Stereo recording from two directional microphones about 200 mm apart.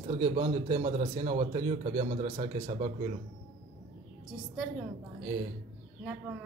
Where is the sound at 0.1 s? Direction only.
30° right (ahead or behind).